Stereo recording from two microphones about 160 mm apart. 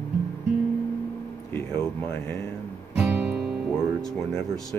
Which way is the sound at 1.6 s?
15° left (ahead or behind).